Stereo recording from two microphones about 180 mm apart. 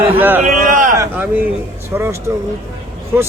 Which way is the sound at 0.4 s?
45° right (ahead or behind).